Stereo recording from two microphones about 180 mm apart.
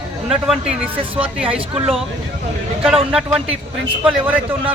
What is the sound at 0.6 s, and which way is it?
Speech, 35° right (ahead or behind).